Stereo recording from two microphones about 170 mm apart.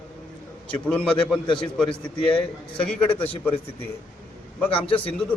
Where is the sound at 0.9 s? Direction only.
5° left (ahead or behind).